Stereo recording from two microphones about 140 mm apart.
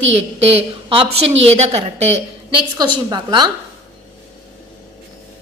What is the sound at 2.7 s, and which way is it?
Speech, 30° right (ahead or behind).